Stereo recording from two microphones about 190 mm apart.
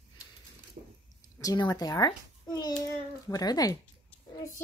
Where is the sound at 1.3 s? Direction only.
20° left (ahead or behind).